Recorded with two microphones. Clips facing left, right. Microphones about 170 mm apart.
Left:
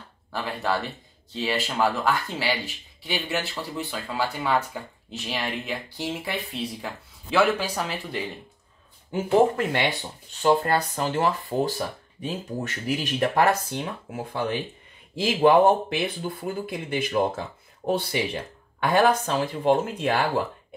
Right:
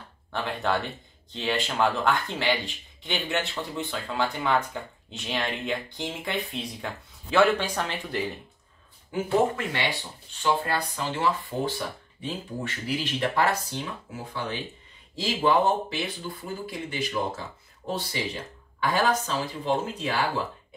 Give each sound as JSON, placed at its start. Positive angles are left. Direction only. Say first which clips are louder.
{"t": 0.3, "sound": "speech", "louder": "even", "side_deg": 5}
{"t": 9.6, "sound": "speech", "louder": "left 5 dB", "side_deg": 50}